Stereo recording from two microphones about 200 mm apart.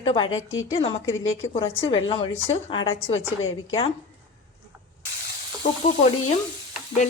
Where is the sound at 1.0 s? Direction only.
80° left.